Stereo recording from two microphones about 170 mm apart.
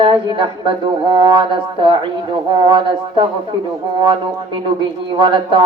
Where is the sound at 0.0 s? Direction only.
30° right (ahead or behind).